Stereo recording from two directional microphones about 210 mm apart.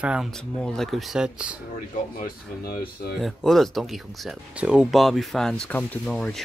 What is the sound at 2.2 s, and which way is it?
Speech, 45° left (ahead or behind).